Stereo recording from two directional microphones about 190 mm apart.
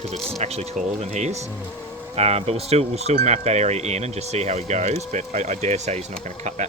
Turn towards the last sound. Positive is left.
turn(degrees=-35)  # may be behind; listen again after turning